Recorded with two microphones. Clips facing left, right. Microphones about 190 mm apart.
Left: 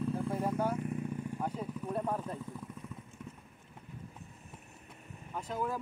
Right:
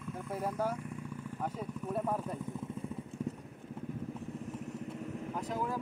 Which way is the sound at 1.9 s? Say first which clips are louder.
Right 1 dB; 5° right (ahead or behind).